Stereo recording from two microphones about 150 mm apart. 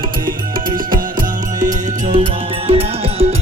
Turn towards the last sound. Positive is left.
turn(degrees=-40)  # may be behind; listen again after turning